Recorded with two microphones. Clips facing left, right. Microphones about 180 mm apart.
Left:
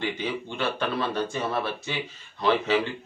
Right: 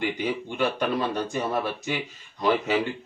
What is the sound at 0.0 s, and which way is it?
A man's voice, 15° right (ahead or behind).